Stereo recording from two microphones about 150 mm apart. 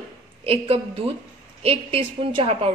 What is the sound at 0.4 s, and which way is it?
A woman's voice, 40° right (ahead or behind).